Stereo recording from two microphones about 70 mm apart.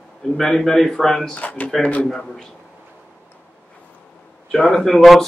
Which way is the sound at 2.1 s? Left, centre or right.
Centre.